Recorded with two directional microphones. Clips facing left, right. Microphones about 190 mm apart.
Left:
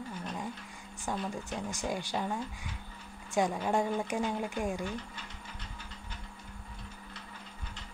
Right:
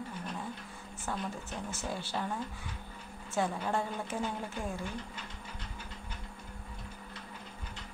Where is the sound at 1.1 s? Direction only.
15° left (ahead or behind).